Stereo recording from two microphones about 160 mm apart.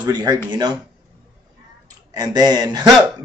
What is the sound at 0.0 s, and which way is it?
Speech, 25° right (ahead or behind).